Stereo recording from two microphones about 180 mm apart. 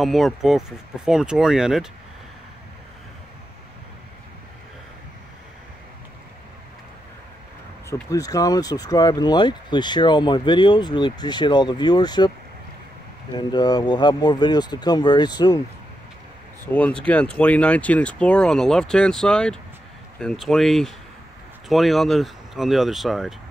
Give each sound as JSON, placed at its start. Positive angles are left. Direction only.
{"t": 0.0, "sound": "speech", "side_deg": 0}
{"t": 7.9, "sound": "speech", "side_deg": 20}
{"t": 13.4, "sound": "speech", "side_deg": 25}
{"t": 16.6, "sound": "speech", "side_deg": 10}